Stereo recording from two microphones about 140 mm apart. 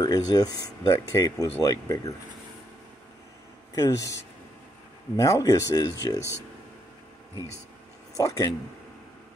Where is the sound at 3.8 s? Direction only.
20° left (ahead or behind).